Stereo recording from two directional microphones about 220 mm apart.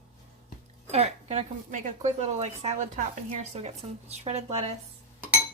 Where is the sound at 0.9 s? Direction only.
30° right (ahead or behind).